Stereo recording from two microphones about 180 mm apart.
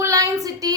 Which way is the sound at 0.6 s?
20° right (ahead or behind).